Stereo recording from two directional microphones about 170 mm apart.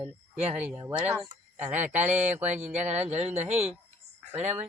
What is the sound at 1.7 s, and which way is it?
Speech, 45° right (ahead or behind).